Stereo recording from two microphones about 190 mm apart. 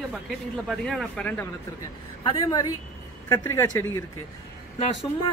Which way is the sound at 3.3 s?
15° left (ahead or behind).